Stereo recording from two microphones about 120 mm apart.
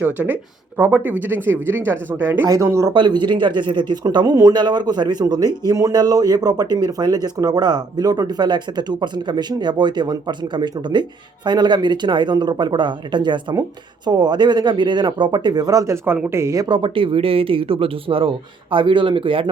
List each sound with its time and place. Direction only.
0.8 s speech: 15° right (ahead or behind)
2.9 s speech: 40° right (ahead or behind)
16.0 s speech: 20° right (ahead or behind)
16.6 s speech: 40° right (ahead or behind)